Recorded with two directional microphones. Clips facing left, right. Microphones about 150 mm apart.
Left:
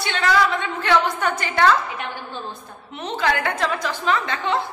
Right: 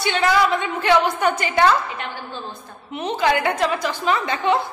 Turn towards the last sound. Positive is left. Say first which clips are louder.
# right 2 dB
turn(degrees=-10)  # may be behind; listen again after turning